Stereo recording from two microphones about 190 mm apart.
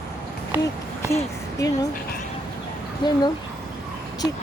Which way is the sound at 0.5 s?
10° right (ahead or behind).